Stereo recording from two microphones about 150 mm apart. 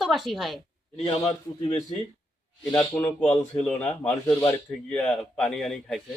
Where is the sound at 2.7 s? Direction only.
30° left (ahead or behind).